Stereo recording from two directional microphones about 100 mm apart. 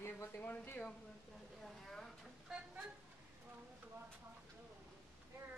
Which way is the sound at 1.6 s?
5° left (ahead or behind).